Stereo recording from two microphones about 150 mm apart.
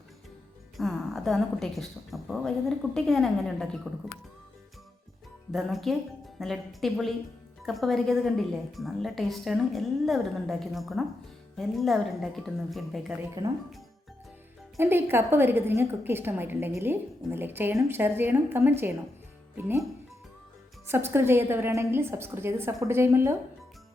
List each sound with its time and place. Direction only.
0.8 s a woman's voice: centre (ahead or behind)
5.5 s a woman's voice: centre (ahead or behind)
14.8 s a woman's voice: 15° right (ahead or behind)
20.8 s a woman's voice: 15° right (ahead or behind)